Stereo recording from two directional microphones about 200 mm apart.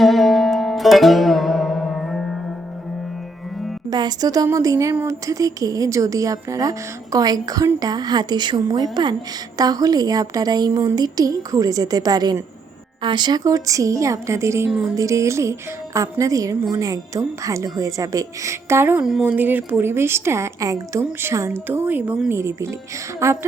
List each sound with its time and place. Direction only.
0.0 s music: centre (ahead or behind)
3.8 s a woman's voice: 20° right (ahead or behind)